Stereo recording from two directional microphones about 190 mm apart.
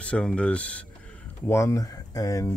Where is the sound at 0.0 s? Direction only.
5° left (ahead or behind).